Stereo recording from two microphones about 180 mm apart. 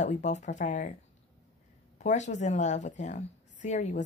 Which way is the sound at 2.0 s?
40° left (ahead or behind).